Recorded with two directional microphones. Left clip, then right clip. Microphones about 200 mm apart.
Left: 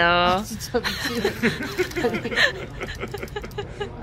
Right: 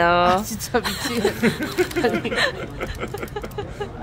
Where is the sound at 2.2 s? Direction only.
5° right (ahead or behind).